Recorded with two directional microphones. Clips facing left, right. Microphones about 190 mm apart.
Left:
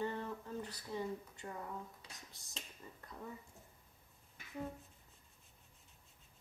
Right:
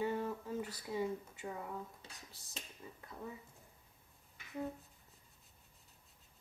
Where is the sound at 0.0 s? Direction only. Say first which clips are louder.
Right 3 dB; 10° right (ahead or behind).